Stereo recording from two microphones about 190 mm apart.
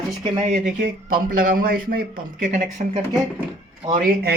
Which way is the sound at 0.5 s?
45° right (ahead or behind).